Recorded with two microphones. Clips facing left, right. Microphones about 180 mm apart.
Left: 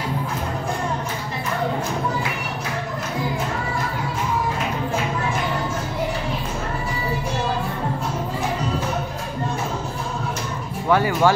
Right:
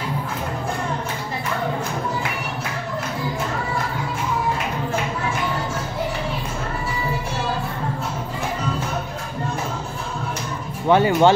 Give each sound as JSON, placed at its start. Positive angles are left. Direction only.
{"t": 10.9, "sound": "speech", "side_deg": -25}